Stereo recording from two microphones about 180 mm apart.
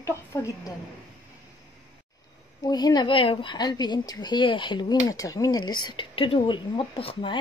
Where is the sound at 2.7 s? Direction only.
20° left (ahead or behind).